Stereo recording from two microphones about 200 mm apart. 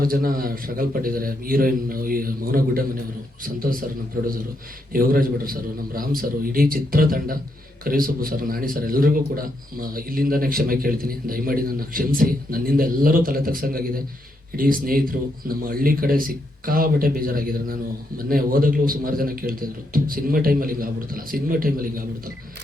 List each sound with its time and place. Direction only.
0.0 s a man's voice: 45° right (ahead or behind)
4.9 s a man's voice: 45° right (ahead or behind)